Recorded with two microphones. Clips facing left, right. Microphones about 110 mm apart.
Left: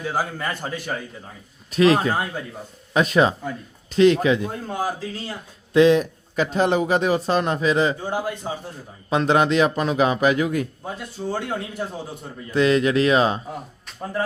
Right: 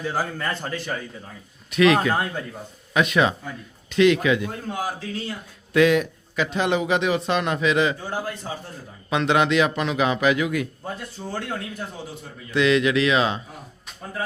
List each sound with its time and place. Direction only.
0.0 s a man's voice: 10° left (ahead or behind)
1.7 s a man's voice: 35° left (ahead or behind)
6.3 s a man's voice: 40° left (ahead or behind)
8.1 s a man's voice: 15° left (ahead or behind)
9.0 s a man's voice: 35° left (ahead or behind)
11.3 s a man's voice: 15° left (ahead or behind)
12.5 s a man's voice: 40° left (ahead or behind)